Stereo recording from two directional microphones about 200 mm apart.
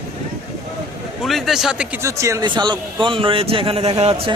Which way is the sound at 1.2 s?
Centre (ahead or behind).